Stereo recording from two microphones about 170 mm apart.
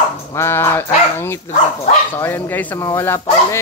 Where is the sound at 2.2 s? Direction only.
10° left (ahead or behind).